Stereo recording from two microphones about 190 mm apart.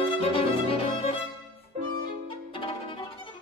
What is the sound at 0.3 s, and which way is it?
Violin, 30° left (ahead or behind).